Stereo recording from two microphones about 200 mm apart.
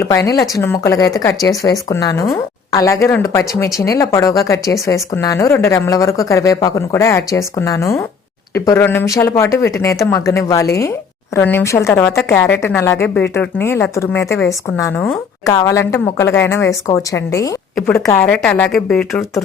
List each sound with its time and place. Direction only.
0.3 s speech: 20° left (ahead or behind)
17.7 s speech: 5° left (ahead or behind)